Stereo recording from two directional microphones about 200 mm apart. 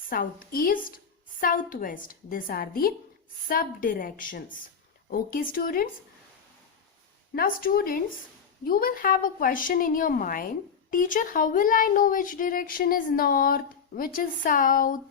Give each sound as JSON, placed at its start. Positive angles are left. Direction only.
{"t": 0.1, "sound": "speech", "side_deg": 45}
{"t": 7.3, "sound": "speech", "side_deg": 45}